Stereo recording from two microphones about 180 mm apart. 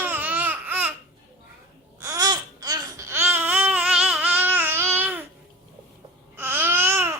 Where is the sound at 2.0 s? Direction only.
20° right (ahead or behind).